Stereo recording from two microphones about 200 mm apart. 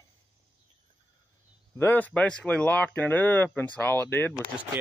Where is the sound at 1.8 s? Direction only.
10° left (ahead or behind).